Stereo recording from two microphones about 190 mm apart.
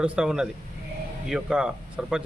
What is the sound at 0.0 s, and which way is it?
A man's voice, 5° right (ahead or behind).